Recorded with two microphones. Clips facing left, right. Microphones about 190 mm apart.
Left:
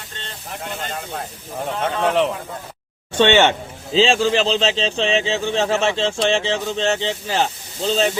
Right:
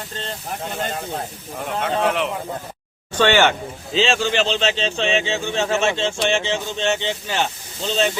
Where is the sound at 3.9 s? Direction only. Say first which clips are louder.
Left 3 dB; 35° left (ahead or behind).